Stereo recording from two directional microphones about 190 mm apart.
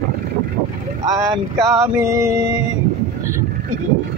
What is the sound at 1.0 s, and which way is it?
Speech, 20° right (ahead or behind).